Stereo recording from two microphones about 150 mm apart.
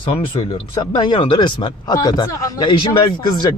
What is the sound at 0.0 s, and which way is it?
Speech, 40° left (ahead or behind).